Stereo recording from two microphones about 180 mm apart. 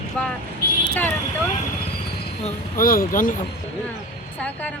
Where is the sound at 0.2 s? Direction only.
5° left (ahead or behind).